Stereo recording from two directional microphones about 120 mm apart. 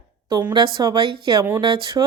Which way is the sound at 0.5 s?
35° right (ahead or behind).